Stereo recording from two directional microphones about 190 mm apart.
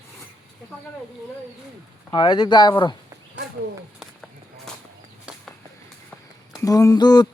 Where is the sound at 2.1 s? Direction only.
25° left (ahead or behind).